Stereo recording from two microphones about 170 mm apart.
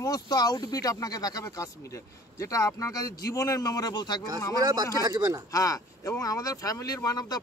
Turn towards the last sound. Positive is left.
turn(degrees=20)  # may be behind; listen again after turning